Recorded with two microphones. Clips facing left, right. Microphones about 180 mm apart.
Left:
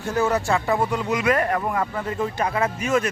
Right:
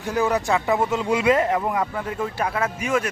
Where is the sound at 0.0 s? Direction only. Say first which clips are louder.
Even; 15° right (ahead or behind).